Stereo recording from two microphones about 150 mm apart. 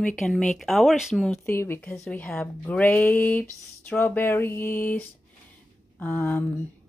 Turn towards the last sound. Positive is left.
turn(degrees=15)  # may be behind; listen again after turning